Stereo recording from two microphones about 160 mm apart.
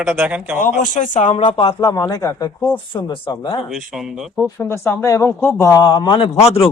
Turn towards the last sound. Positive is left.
turn(degrees=30)  # may be behind; listen again after turning